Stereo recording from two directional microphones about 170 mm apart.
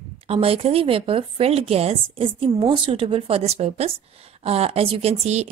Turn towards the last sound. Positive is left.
turn(degrees=-40)  # may be behind; listen again after turning